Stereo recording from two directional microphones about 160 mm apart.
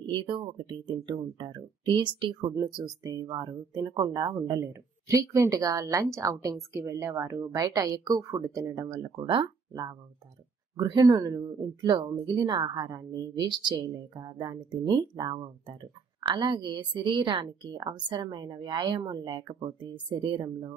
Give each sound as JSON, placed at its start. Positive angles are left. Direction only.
{"t": 0.0, "sound": "a woman's voice", "side_deg": -30}